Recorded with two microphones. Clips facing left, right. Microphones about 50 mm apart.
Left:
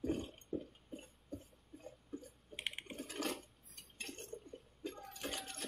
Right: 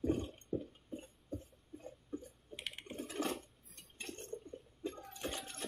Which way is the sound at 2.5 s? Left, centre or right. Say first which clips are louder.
Left 2 dB; left.